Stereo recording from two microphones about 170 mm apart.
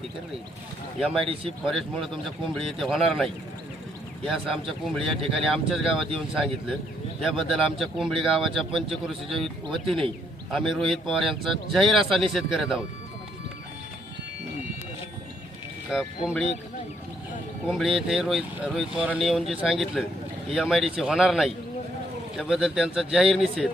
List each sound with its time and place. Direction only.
0.9 s speech: centre (ahead or behind)
1.2 s speech: 30° right (ahead or behind)
1.6 s speech: centre (ahead or behind)
4.3 s speech: centre (ahead or behind)
15.9 s speech: centre (ahead or behind)
17.7 s speech: centre (ahead or behind)